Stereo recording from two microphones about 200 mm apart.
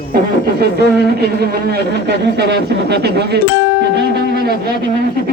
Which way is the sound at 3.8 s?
55° right (ahead or behind).